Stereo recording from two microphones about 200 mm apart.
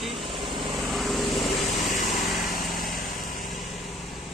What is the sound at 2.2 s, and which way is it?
Light engine, centre (ahead or behind).